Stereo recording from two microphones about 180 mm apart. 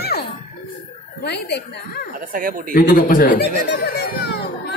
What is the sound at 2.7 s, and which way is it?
Speech, 50° left (ahead or behind).